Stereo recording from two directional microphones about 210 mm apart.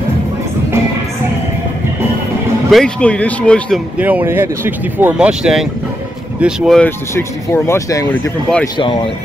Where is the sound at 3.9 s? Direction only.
10° right (ahead or behind).